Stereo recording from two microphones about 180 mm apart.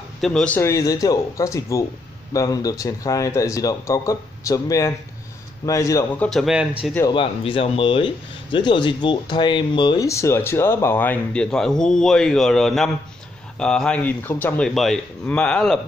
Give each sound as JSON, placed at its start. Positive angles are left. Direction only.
{"t": 0.2, "sound": "a man's voice", "side_deg": 5}
{"t": 7.1, "sound": "a man's voice", "side_deg": 30}